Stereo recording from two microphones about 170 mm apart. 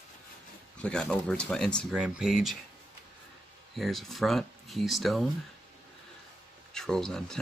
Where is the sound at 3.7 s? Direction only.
Centre (ahead or behind).